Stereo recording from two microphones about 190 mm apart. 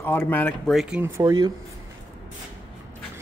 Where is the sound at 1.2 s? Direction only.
20° right (ahead or behind).